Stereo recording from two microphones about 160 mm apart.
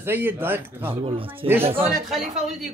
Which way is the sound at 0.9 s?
35° right (ahead or behind).